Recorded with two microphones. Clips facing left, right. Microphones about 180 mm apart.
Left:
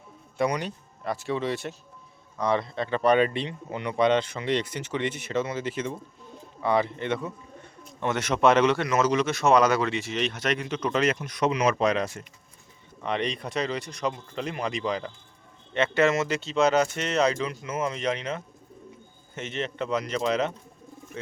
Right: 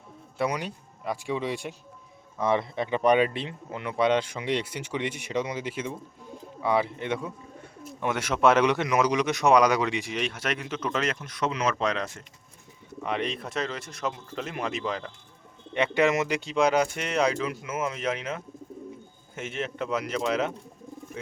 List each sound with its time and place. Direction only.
0.3 s speech: 5° right (ahead or behind)
2.4 s speech: 20° right (ahead or behind)
3.2 s speech: 5° right (ahead or behind)
11.2 s speech: 15° left (ahead or behind)
13.0 s speech: 5° right (ahead or behind)
15.7 s speech: 15° right (ahead or behind)